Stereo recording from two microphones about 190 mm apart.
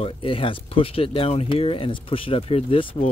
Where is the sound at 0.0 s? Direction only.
30° left (ahead or behind).